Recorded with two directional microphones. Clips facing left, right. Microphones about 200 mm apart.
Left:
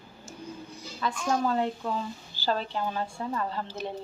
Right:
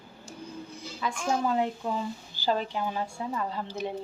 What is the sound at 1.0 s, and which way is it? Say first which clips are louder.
A woman's voice: left 1 dB; 10° right (ahead or behind).